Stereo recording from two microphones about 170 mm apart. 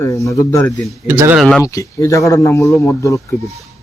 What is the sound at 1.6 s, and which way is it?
A man's voice, 20° left (ahead or behind).